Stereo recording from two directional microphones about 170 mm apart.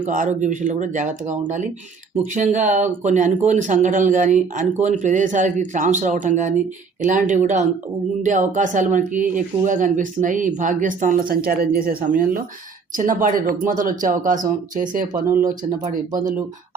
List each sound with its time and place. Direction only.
0.0 s speech: 50° right (ahead or behind)